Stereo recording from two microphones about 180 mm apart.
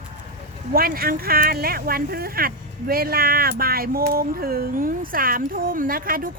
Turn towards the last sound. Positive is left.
turn(degrees=-50)  # may be behind; listen again after turning